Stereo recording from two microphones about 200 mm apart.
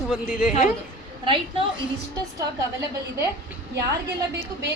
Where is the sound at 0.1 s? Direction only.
5° right (ahead or behind).